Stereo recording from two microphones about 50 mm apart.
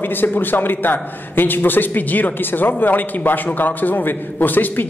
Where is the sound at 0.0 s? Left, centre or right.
Left.